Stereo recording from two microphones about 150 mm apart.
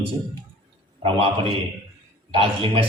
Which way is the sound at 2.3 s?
35° right (ahead or behind).